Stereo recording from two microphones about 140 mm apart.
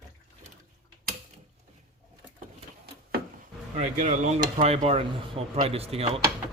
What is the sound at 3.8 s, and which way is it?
Speech, 60° right (ahead or behind).